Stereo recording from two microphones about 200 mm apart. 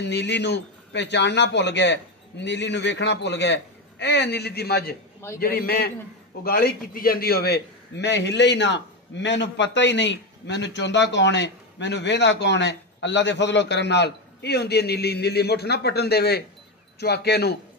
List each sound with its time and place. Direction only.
0.0 s a man's voice: 60° left (ahead or behind)